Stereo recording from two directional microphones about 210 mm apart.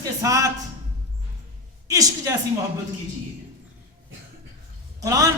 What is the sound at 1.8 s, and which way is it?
Speech, 15° right (ahead or behind).